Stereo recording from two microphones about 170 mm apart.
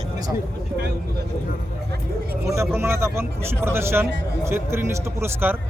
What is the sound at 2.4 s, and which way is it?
A man's voice, 15° right (ahead or behind).